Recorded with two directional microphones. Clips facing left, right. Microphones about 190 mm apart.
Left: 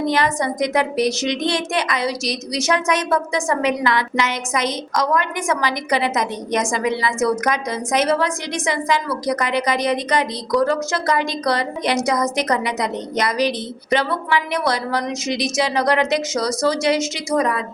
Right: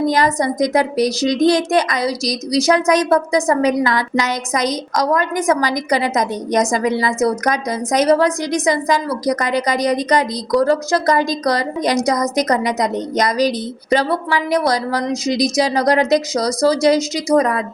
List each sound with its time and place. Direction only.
0.1 s a woman's voice: 40° right (ahead or behind)